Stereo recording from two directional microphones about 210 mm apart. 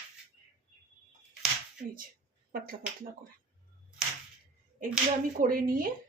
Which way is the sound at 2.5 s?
45° right (ahead or behind).